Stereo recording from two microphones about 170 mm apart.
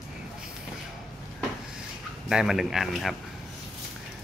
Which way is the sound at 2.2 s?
Centre (ahead or behind).